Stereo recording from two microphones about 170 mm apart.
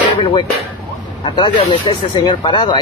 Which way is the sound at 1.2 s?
25° left (ahead or behind).